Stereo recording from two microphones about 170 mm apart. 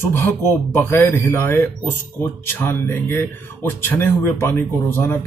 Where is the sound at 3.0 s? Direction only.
15° left (ahead or behind).